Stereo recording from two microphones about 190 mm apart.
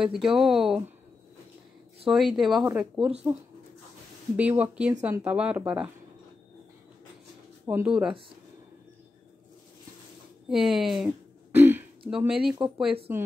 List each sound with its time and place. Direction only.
0.0 s speech: 5° right (ahead or behind)
2.0 s speech: centre (ahead or behind)
3.1 s speech: 30° right (ahead or behind)
4.4 s speech: 5° right (ahead or behind)
7.6 s speech: 10° right (ahead or behind)
10.5 s speech: centre (ahead or behind)
11.5 s throat clearing: 10° right (ahead or behind)
12.1 s speech: 5° right (ahead or behind)